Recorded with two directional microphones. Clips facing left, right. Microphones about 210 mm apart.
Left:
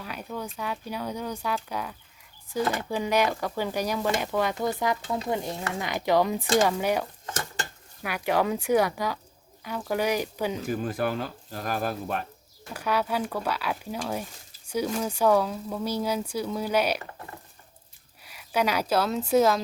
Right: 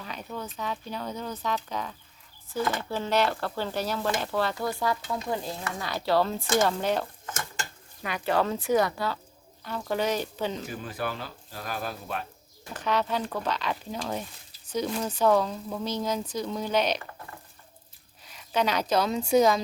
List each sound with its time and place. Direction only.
0.0 s a sound: 10° left (ahead or behind)
0.5 s speech: 10° left (ahead or behind)
5.0 s stir: 25° left (ahead or behind)
5.7 s speech: 15° left (ahead or behind)
10.7 s speech: 50° left (ahead or behind)
12.7 s speech: 10° left (ahead or behind)
18.2 s speech: 10° left (ahead or behind)